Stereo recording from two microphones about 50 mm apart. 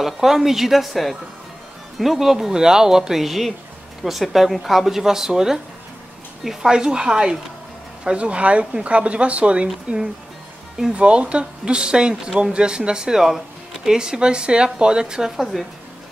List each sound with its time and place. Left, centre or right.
0.0 s speech: centre